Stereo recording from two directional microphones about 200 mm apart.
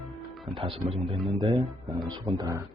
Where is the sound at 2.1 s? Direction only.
20° right (ahead or behind).